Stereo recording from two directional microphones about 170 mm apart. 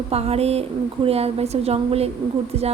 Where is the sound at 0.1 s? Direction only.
35° right (ahead or behind).